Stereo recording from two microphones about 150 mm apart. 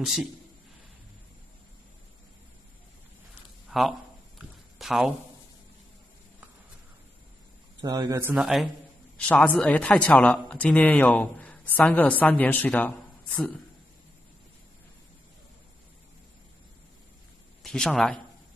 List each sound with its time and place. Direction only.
0.0 s a man's voice: centre (ahead or behind)
3.7 s speech: centre (ahead or behind)
4.4 s a sound: centre (ahead or behind)
7.8 s speech: 25° right (ahead or behind)
8.4 s a man's voice: centre (ahead or behind)
9.1 s a man's voice: 10° left (ahead or behind)
17.6 s speech: 5° left (ahead or behind)